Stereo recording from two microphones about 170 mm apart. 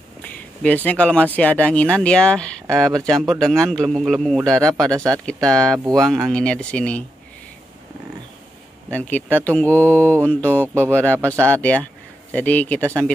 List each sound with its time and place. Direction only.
0.2 s speech: 10° left (ahead or behind)
4.9 s speech: 20° right (ahead or behind)
5.2 s speech: 5° left (ahead or behind)
8.9 s speech: 10° left (ahead or behind)
10.7 s speech: 15° right (ahead or behind)
11.4 s speech: 10° left (ahead or behind)